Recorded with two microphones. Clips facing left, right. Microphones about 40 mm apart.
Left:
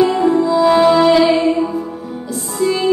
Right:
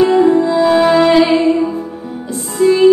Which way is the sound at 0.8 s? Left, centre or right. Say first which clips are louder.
Right 1 dB; centre.